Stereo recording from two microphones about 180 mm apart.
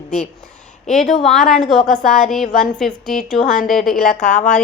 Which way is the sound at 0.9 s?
40° left (ahead or behind).